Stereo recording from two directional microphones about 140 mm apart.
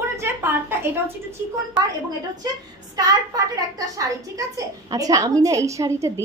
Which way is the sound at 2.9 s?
25° right (ahead or behind).